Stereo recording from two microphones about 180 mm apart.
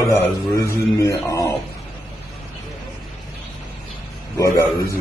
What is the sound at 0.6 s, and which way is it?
Mantra, 15° left (ahead or behind).